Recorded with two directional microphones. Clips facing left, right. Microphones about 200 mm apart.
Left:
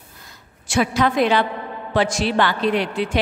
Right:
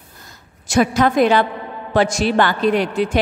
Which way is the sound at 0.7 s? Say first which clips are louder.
Right 4 dB; 45° right (ahead or behind).